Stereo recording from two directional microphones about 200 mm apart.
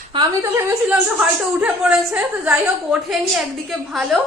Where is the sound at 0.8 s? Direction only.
5° right (ahead or behind).